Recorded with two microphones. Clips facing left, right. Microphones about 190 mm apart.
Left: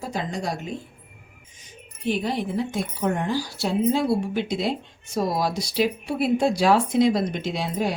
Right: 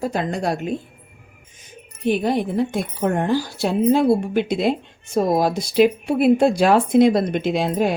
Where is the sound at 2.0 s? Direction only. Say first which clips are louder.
Right 5 dB; 55° right (ahead or behind).